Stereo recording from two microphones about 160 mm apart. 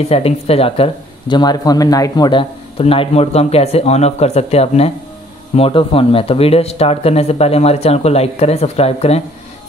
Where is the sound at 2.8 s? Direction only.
35° left (ahead or behind).